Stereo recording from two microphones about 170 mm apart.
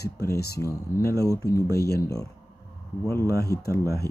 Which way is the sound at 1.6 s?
70° left (ahead or behind).